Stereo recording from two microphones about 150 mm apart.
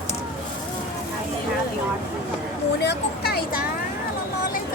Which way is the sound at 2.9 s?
90° left.